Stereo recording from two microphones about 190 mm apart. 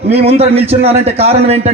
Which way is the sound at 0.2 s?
35° right (ahead or behind).